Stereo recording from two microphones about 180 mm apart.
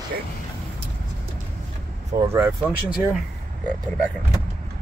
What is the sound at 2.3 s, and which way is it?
Speech, 15° right (ahead or behind).